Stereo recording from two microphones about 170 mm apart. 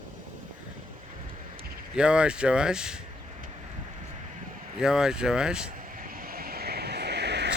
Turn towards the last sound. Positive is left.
turn(degrees=-80)